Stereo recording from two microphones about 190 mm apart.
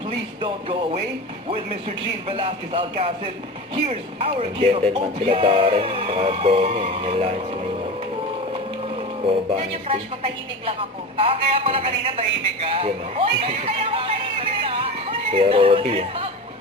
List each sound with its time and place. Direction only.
0.4 s speech: 25° right (ahead or behind)
2.3 s speech: 30° right (ahead or behind)
9.2 s speech: 30° right (ahead or behind)
13.7 s music: 30° right (ahead or behind)
15.8 s speech: 35° right (ahead or behind)